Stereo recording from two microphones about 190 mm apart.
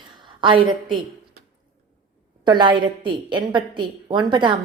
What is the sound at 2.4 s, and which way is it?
A woman's voice, 25° right (ahead or behind).